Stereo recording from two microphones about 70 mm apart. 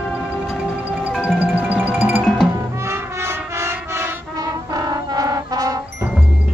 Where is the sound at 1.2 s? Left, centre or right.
Centre.